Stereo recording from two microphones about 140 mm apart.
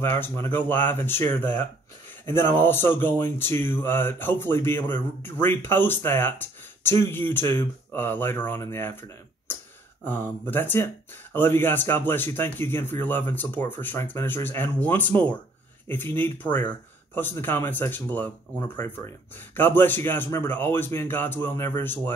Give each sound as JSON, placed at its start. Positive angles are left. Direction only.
{"t": 0.0, "sound": "speech", "side_deg": 15}
{"t": 10.0, "sound": "speech", "side_deg": 15}